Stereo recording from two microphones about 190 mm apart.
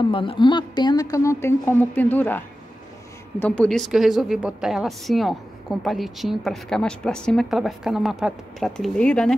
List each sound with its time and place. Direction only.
0.1 s a woman's voice: 25° left (ahead or behind); by 9.3 s 5° left (ahead or behind)